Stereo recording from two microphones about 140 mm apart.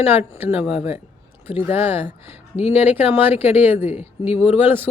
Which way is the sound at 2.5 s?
45° left (ahead or behind).